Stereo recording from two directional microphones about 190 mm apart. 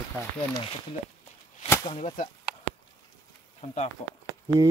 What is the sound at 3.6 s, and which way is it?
Speech, 35° left (ahead or behind).